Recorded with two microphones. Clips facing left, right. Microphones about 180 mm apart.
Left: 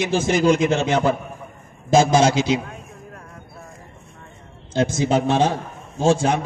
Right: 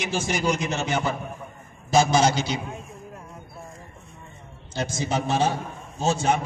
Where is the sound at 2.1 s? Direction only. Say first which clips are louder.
Left 5 dB; 90° left.